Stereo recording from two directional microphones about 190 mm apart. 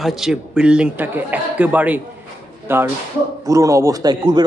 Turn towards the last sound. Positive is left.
turn(degrees=-20)  # may be behind; listen again after turning